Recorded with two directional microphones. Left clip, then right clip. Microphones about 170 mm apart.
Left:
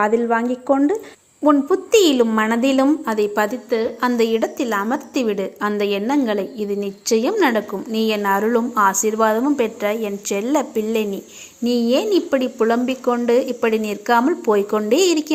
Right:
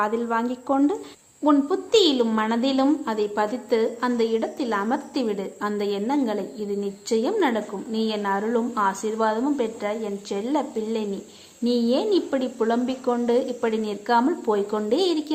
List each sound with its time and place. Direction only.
0.0 s a woman's voice: 20° left (ahead or behind)
11.6 s a child's voice: 55° left (ahead or behind)
12.5 s a woman's voice: 15° left (ahead or behind)